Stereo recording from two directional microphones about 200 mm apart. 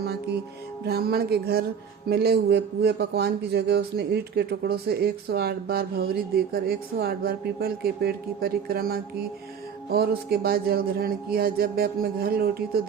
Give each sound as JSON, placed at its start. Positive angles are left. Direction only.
{"t": 0.9, "sound": "speech", "side_deg": -50}